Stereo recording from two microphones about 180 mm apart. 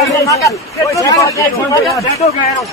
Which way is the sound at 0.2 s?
15° left (ahead or behind).